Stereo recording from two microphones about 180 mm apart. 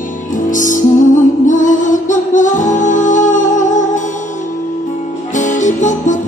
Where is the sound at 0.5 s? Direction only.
45° left (ahead or behind).